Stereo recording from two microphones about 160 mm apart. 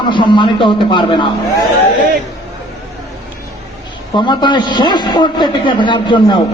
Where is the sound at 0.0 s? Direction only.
30° left (ahead or behind).